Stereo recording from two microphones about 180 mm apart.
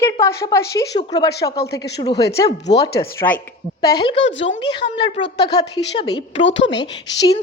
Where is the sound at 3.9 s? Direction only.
25° left (ahead or behind).